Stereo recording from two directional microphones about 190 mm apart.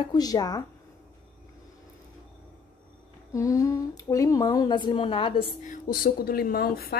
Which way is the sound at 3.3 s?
15° left (ahead or behind).